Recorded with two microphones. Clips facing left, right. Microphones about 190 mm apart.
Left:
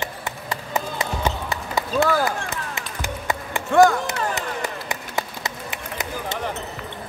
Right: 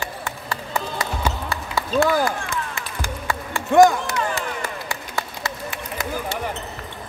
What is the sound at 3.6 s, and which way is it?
Speech, 15° right (ahead or behind).